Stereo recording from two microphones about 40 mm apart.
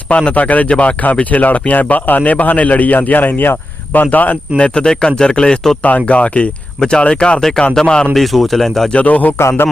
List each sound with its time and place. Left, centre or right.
0.1 s speech: left
0.3 s a man's voice: left
4.5 s speech: left
6.1 s speech: left
8.1 s speech: centre
9.0 s a man's voice: left